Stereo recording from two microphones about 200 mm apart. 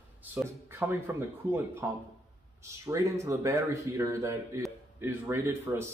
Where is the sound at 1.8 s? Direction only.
15° right (ahead or behind).